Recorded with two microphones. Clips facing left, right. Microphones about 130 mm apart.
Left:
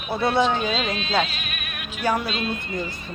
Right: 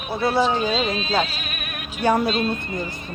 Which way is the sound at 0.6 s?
35° right (ahead or behind).